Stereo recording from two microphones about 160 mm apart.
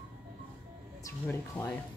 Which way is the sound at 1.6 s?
10° left (ahead or behind).